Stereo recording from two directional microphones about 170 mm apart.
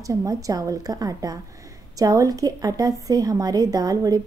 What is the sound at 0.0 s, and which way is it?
A woman's voice, 20° right (ahead or behind).